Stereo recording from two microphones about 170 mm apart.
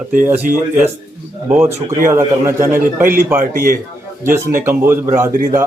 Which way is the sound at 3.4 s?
55° right (ahead or behind).